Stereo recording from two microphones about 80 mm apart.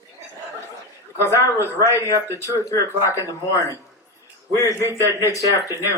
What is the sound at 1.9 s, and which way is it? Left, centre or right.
Speech, right.